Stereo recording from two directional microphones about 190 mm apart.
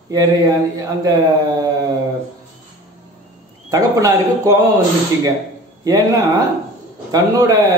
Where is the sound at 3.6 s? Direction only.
20° right (ahead or behind).